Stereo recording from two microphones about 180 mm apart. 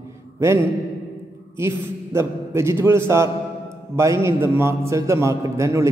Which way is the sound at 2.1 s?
15° right (ahead or behind).